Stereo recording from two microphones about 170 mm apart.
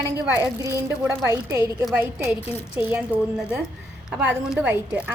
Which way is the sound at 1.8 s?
5° right (ahead or behind).